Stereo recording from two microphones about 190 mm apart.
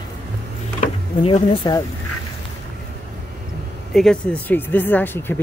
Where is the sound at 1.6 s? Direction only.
20° left (ahead or behind).